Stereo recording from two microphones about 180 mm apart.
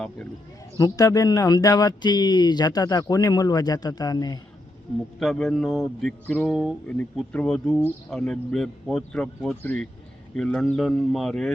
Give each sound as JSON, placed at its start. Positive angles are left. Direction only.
{"t": 0.8, "sound": "speech", "side_deg": 20}
{"t": 5.2, "sound": "speech", "side_deg": 0}